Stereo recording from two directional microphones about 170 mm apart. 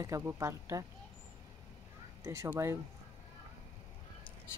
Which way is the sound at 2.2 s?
15° right (ahead or behind).